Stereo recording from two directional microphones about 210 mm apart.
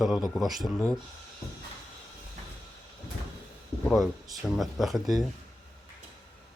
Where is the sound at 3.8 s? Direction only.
Centre (ahead or behind).